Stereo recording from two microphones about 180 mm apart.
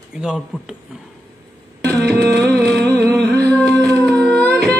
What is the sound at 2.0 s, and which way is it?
Tabla, 65° right (ahead or behind).